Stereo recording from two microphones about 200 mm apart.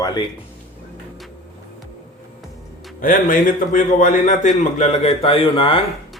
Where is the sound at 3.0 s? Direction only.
40° left (ahead or behind); by 5.8 s 25° left (ahead or behind).